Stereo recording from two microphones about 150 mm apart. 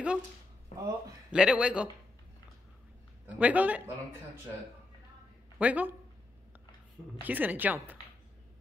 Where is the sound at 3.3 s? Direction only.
10° right (ahead or behind).